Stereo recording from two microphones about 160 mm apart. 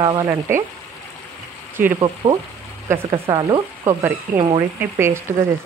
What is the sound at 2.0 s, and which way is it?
Stir, 30° right (ahead or behind).